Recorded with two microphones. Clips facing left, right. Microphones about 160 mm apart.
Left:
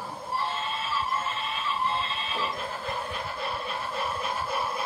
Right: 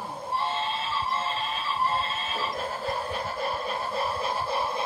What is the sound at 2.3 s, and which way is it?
Train, 40° right (ahead or behind).